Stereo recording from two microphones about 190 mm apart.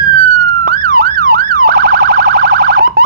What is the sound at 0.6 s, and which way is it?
Siren, 50° right (ahead or behind).